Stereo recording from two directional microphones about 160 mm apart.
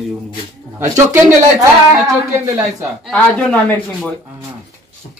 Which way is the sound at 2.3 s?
15° right (ahead or behind).